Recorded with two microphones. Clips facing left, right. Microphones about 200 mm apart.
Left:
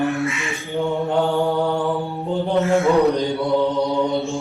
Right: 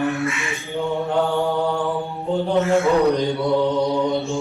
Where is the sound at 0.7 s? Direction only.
15° left (ahead or behind).